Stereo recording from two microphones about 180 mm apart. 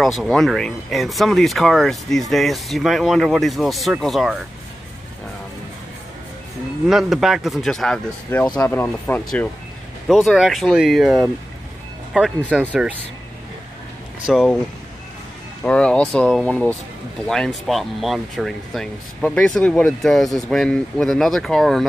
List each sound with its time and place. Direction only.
0.0 s speech: centre (ahead or behind)
6.9 s speech: centre (ahead or behind)
10.0 s speech: centre (ahead or behind)
14.2 s speech: centre (ahead or behind)
15.6 s speech: 5° left (ahead or behind)